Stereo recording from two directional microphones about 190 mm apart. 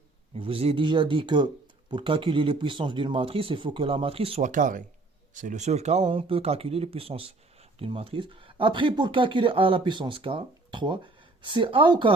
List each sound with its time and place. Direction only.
0.3 s speech: 30° right (ahead or behind)